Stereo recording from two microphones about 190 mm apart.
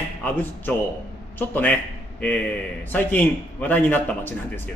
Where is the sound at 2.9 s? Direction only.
10° left (ahead or behind).